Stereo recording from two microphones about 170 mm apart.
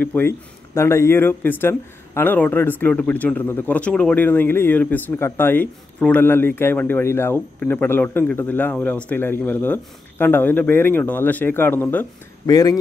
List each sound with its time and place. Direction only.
0.0 s speech: 10° left (ahead or behind)
12.4 s speech: 20° left (ahead or behind)